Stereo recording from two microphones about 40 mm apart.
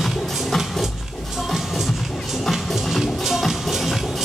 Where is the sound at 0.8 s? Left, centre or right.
Centre.